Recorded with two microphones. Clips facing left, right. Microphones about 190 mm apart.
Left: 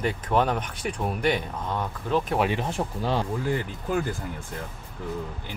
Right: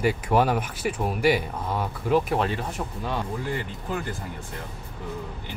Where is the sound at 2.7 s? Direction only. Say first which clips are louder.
Left 3 dB; 30° left (ahead or behind).